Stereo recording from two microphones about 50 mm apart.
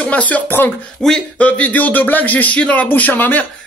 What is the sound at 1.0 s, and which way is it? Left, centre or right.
Speech, centre.